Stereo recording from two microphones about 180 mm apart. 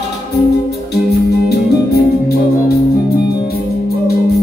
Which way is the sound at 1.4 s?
60° left (ahead or behind).